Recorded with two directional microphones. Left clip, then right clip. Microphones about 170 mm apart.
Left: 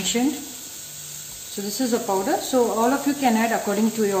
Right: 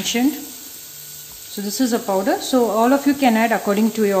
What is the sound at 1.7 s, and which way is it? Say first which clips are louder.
Speech: right 3 dB; 35° right (ahead or behind).